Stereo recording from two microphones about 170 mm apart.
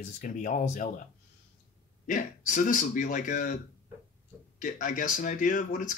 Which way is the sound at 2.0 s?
50° left (ahead or behind).